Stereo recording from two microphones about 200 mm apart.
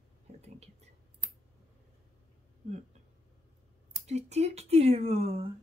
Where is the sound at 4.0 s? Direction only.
35° right (ahead or behind).